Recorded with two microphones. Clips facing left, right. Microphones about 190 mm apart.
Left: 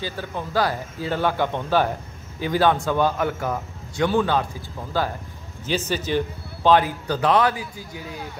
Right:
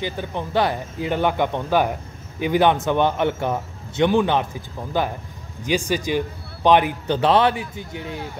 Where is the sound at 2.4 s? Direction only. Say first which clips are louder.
Right 2 dB; 20° right (ahead or behind).